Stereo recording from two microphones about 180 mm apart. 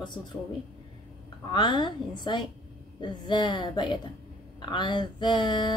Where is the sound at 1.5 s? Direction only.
25° left (ahead or behind).